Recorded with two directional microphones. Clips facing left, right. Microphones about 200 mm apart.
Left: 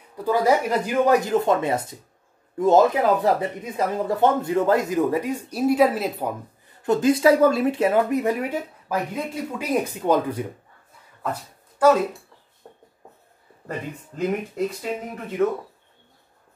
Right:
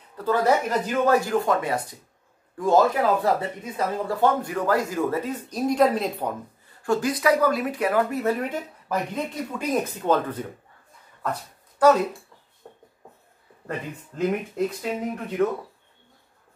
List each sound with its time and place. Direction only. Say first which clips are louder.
0.2 s speech: left 2 dB; 10° left (ahead or behind)
6.8 s speech: left 5 dB; 20° left (ahead or behind)
13.7 s speech: left 1 dB; centre (ahead or behind)